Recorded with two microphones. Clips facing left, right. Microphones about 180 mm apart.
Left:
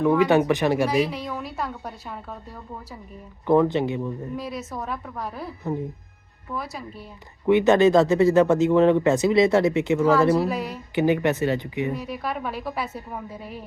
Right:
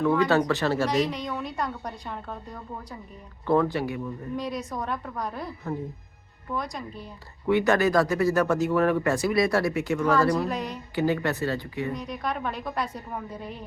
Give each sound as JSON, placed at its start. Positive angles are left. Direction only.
{"t": 0.3, "sound": "a woman's voice", "side_deg": 20}
{"t": 3.4, "sound": "speech", "side_deg": 15}
{"t": 4.4, "sound": "a woman's voice", "side_deg": 5}
{"t": 6.5, "sound": "a woman's voice", "side_deg": 5}
{"t": 7.4, "sound": "speech", "side_deg": 20}
{"t": 10.3, "sound": "a woman's voice", "side_deg": 5}
{"t": 10.9, "sound": "speech", "side_deg": 20}
{"t": 11.9, "sound": "a woman's voice", "side_deg": 5}